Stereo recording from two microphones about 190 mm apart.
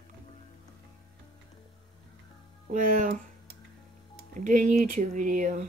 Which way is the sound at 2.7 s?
45° right (ahead or behind).